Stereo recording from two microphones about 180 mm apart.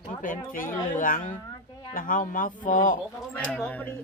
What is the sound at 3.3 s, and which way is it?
Speech, 5° left (ahead or behind).